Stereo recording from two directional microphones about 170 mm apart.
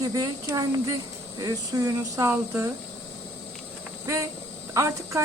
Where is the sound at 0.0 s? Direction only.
20° right (ahead or behind).